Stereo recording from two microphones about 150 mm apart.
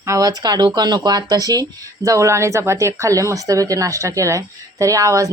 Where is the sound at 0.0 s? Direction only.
20° right (ahead or behind).